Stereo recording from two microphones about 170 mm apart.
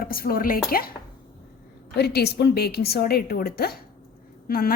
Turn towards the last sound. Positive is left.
turn(degrees=60)  # may be behind; listen again after turning